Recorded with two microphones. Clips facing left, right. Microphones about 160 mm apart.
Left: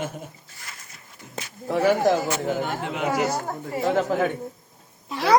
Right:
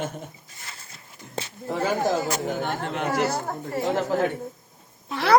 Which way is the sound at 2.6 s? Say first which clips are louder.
Left 1 dB; 5° left (ahead or behind).